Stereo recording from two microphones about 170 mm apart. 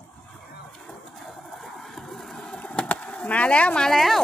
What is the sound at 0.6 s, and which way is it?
Vehicle, 5° left (ahead or behind).